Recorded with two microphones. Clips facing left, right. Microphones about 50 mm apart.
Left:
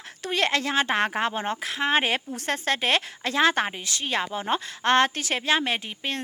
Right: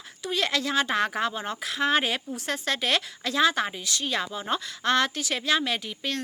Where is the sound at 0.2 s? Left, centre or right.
Left.